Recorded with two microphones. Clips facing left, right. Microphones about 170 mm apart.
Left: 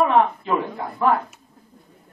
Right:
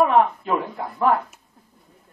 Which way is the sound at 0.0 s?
5° right (ahead or behind).